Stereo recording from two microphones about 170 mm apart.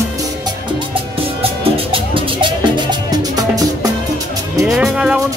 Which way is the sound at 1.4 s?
30° right (ahead or behind).